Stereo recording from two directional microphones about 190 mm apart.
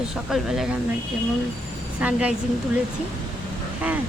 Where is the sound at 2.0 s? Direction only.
5° right (ahead or behind).